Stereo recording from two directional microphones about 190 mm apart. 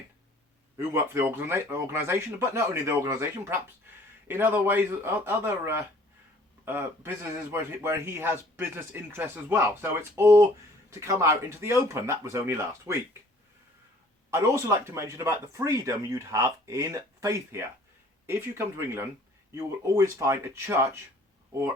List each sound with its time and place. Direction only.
0.8 s speech: 15° right (ahead or behind)
14.3 s speech: 15° right (ahead or behind)